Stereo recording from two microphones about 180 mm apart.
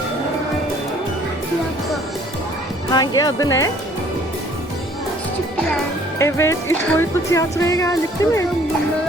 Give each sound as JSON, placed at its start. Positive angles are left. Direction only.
{"t": 2.9, "sound": "speech", "side_deg": 20}
{"t": 6.1, "sound": "speech", "side_deg": 15}